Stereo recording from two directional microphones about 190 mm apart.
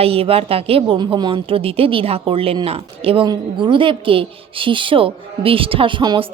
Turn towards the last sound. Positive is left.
turn(degrees=-25)  # may be behind; listen again after turning